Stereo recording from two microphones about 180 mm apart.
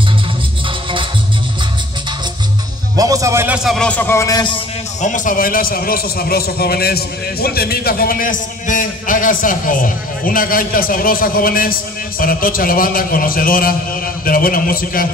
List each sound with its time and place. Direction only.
3.0 s a man's voice: 20° right (ahead or behind); by 4.6 s 20° left (ahead or behind)
5.0 s a man's voice: 45° left (ahead or behind)